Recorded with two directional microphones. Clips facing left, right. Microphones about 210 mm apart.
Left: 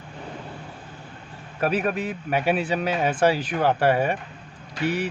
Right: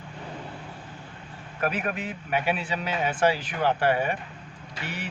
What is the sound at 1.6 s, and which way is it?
Speech, 35° left (ahead or behind).